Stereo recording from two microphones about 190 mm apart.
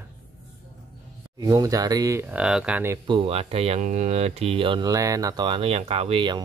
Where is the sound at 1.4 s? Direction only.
20° right (ahead or behind).